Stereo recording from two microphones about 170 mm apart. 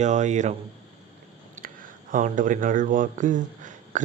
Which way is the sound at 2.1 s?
50° right (ahead or behind).